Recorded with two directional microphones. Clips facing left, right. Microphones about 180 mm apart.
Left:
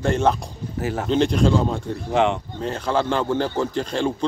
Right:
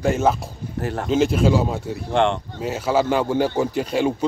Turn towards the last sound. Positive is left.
turn(degrees=-10)  # may be behind; listen again after turning